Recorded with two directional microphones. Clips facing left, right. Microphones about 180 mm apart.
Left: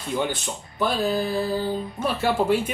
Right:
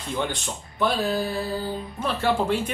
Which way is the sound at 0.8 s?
Centre (ahead or behind).